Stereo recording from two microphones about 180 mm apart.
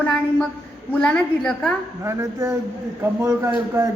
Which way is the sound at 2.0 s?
15° right (ahead or behind).